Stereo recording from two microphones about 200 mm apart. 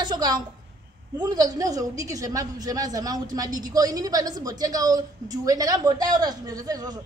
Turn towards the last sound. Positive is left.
turn(degrees=-20)  # may be behind; listen again after turning